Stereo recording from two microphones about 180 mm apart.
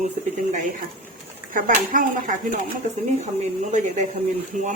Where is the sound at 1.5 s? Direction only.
50° right (ahead or behind).